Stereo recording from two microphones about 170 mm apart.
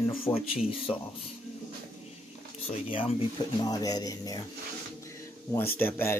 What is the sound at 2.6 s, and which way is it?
Speech, 35° left (ahead or behind).